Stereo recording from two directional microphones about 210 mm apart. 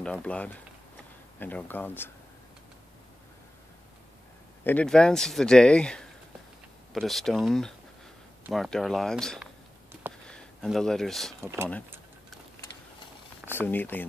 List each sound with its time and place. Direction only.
0.0 s speech: 5° left (ahead or behind)
4.6 s speech: 5° left (ahead or behind)
11.4 s speech: 10° right (ahead or behind)
13.5 s speech: 10° left (ahead or behind)